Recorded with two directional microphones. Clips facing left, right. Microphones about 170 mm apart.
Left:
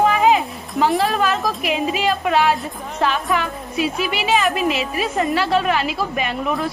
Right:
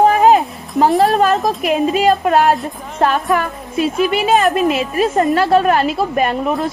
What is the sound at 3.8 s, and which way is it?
Speech, 5° left (ahead or behind).